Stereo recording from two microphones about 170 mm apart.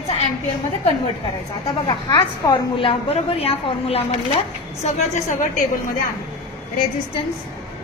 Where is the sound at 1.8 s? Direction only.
25° left (ahead or behind); by 5.4 s 45° left (ahead or behind).